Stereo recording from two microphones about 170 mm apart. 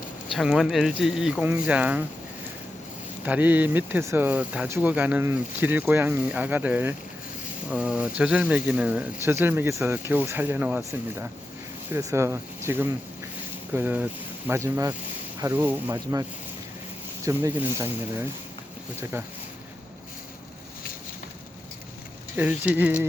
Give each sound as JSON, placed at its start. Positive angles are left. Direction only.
{"t": 0.3, "sound": "speech", "side_deg": 0}
{"t": 3.2, "sound": "speech", "side_deg": -10}
{"t": 17.2, "sound": "speech", "side_deg": -15}
{"t": 22.4, "sound": "speech", "side_deg": -10}